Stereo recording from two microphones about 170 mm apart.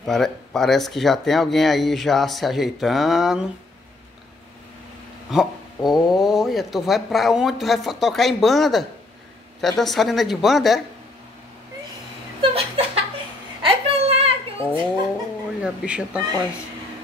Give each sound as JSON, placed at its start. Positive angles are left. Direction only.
{"t": 0.0, "sound": "speech", "side_deg": 0}
{"t": 5.3, "sound": "speech", "side_deg": 0}
{"t": 12.4, "sound": "laughter", "side_deg": -35}
{"t": 13.6, "sound": "a sound", "side_deg": -35}
{"t": 15.6, "sound": "speech", "side_deg": -5}